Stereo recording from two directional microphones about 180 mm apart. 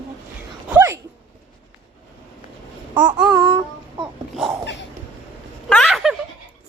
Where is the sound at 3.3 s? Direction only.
25° right (ahead or behind).